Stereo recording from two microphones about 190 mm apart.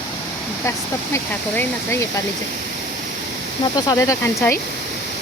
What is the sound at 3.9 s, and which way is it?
Speech, 15° left (ahead or behind).